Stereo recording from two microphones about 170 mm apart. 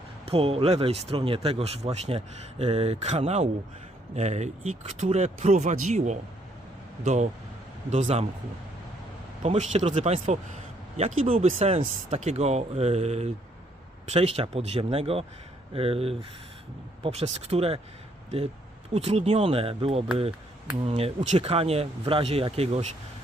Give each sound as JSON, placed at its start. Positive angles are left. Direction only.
{"t": 0.3, "sound": "speech", "side_deg": -35}
{"t": 9.4, "sound": "speech", "side_deg": -40}
{"t": 18.9, "sound": "speech", "side_deg": -35}